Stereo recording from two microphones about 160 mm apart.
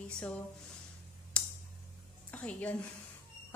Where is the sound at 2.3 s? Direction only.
5° left (ahead or behind).